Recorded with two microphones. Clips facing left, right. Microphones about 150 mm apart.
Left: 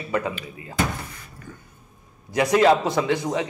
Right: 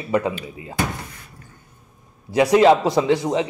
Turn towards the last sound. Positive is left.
turn(degrees=-25)  # may be behind; listen again after turning